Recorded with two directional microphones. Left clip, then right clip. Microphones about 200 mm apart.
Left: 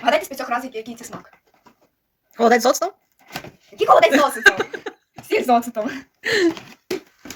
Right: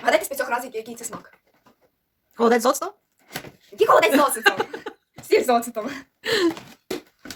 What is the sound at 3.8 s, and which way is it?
Speech, 15° right (ahead or behind).